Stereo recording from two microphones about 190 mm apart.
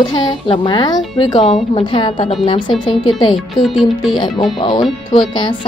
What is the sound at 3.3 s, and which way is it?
Music, centre (ahead or behind).